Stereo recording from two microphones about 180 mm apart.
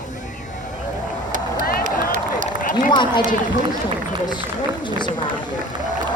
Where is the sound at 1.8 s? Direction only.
45° right (ahead or behind).